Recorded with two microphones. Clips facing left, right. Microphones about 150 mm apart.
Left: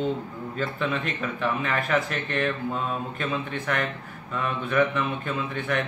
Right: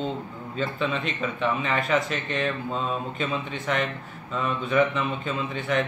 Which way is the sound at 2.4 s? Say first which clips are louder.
Left 1 dB; 20° right (ahead or behind).